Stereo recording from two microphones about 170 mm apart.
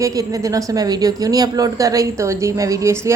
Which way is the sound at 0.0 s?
20° right (ahead or behind).